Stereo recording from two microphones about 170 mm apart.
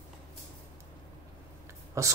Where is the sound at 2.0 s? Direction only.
20° right (ahead or behind).